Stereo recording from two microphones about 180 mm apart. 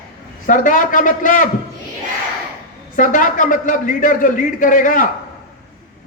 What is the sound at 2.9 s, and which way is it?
A woman's voice, 50° left (ahead or behind).